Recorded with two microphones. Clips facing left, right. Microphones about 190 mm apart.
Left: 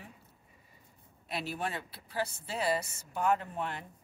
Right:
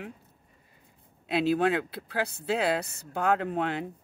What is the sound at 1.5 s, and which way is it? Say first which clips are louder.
Speech: right 14 dB; 90° right.